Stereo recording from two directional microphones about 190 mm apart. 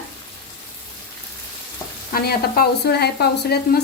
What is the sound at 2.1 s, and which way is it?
Speech, 55° left (ahead or behind).